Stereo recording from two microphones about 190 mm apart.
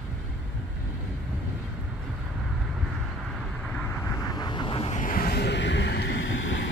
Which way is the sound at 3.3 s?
Centre (ahead or behind).